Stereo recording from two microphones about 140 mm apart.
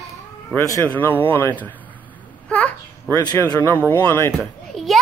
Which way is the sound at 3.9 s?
15° left (ahead or behind).